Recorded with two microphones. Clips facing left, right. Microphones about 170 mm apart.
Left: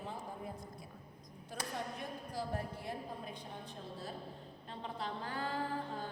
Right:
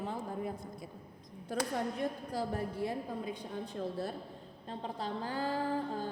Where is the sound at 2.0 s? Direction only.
75° right (ahead or behind).